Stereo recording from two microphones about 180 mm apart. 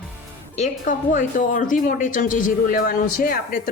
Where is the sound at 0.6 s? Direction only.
45° left (ahead or behind).